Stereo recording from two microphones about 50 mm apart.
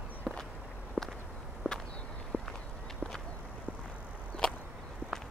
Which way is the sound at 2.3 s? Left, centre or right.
Right.